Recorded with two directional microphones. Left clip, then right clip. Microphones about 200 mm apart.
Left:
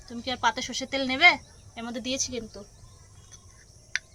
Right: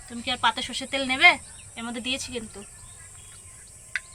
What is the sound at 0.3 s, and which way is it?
Speech, 55° left (ahead or behind).